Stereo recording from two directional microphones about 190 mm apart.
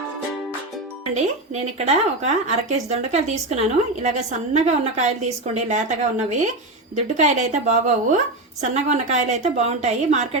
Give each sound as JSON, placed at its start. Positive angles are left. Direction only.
{"t": 1.1, "sound": "a woman's voice", "side_deg": -35}